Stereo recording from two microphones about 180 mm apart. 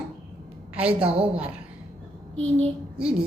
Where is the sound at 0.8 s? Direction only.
5° right (ahead or behind).